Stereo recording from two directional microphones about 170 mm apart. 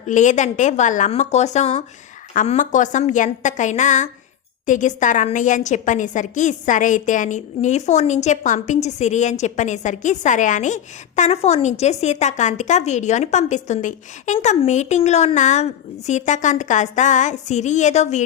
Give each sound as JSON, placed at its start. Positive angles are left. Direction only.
{"t": 0.1, "sound": "a woman's voice", "side_deg": 45}